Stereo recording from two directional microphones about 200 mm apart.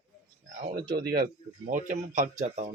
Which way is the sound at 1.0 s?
50° right (ahead or behind).